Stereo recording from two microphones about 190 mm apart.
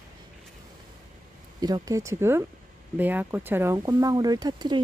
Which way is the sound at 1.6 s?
20° right (ahead or behind).